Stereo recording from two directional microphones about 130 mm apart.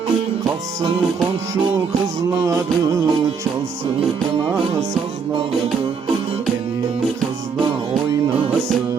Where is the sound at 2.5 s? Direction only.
25° right (ahead or behind).